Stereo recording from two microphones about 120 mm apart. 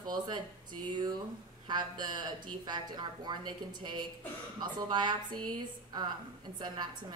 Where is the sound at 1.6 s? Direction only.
35° right (ahead or behind).